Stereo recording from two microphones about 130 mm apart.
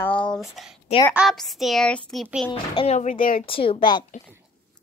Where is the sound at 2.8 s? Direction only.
60° left (ahead or behind); by 3.4 s 90° left.